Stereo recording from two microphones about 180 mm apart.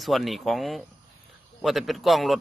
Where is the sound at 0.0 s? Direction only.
Centre (ahead or behind).